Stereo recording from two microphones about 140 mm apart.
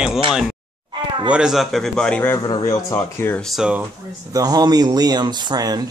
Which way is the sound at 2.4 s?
30° left (ahead or behind).